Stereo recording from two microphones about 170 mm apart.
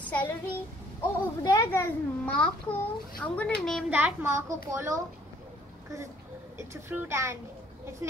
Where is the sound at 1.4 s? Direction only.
20° left (ahead or behind).